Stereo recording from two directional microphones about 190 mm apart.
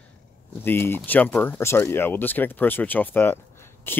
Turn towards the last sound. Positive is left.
turn(degrees=10)  # may be behind; listen again after turning